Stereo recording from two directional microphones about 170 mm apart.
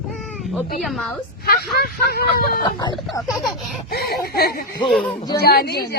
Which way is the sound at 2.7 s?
25° left (ahead or behind).